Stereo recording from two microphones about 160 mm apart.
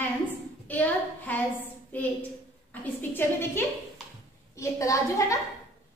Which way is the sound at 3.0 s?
15° left (ahead or behind).